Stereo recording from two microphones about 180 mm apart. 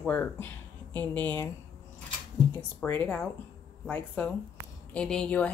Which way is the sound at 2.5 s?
10° left (ahead or behind).